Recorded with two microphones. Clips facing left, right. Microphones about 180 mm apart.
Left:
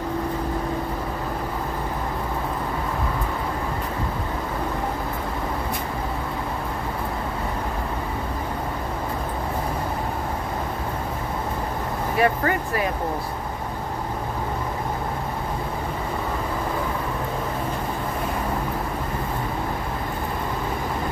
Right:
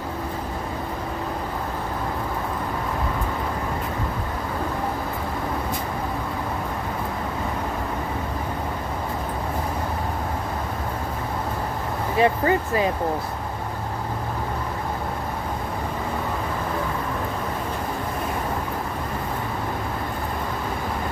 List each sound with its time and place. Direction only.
12.2 s speech: 25° right (ahead or behind)